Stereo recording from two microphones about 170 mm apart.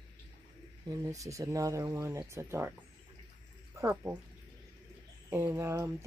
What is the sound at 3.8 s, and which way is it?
Speech, 15° right (ahead or behind).